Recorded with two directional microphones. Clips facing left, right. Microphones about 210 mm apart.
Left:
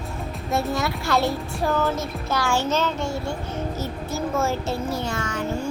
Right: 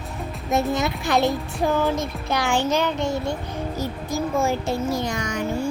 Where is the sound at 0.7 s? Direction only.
20° right (ahead or behind).